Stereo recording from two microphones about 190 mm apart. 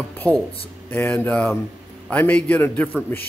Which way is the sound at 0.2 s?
10° left (ahead or behind).